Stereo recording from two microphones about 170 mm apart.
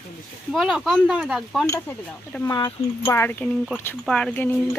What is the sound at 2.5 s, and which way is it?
Speech, 20° left (ahead or behind).